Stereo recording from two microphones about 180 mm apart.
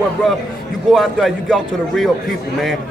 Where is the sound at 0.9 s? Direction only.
Centre (ahead or behind).